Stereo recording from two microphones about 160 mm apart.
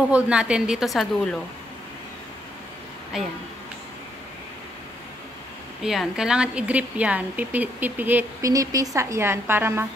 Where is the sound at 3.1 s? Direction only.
5° right (ahead or behind).